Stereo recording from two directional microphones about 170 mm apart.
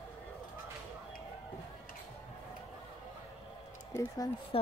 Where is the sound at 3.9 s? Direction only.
20° left (ahead or behind).